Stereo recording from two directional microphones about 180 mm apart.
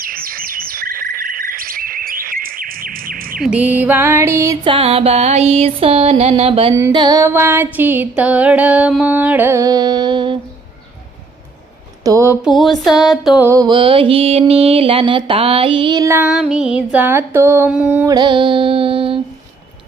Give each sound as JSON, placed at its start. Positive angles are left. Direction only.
{"t": 0.0, "sound": "bird", "side_deg": -55}
{"t": 3.4, "sound": "female singing", "side_deg": -5}
{"t": 4.6, "sound": "music", "side_deg": -30}
{"t": 6.7, "sound": "female singing", "side_deg": -20}
{"t": 12.0, "sound": "female singing", "side_deg": -15}
{"t": 12.5, "sound": "mantra", "side_deg": 0}
{"t": 16.0, "sound": "female singing", "side_deg": -10}
{"t": 18.1, "sound": "music", "side_deg": -25}